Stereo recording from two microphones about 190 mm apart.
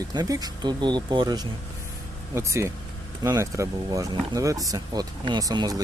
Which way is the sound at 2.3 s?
15° right (ahead or behind).